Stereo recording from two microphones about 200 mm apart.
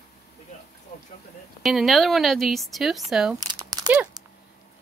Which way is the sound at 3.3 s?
20° right (ahead or behind).